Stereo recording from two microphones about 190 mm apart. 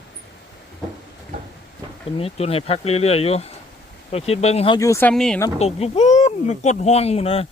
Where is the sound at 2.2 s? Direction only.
30° left (ahead or behind); by 5.4 s 5° left (ahead or behind).